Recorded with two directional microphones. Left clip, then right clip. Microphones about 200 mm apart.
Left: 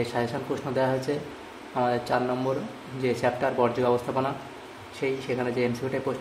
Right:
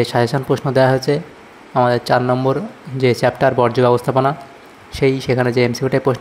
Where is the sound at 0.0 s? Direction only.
45° right (ahead or behind).